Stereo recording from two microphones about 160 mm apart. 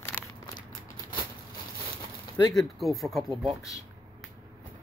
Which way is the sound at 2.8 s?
Centre (ahead or behind).